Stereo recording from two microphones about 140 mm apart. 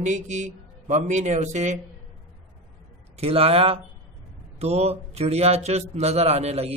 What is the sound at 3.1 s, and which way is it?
A man's voice, 45° right (ahead or behind).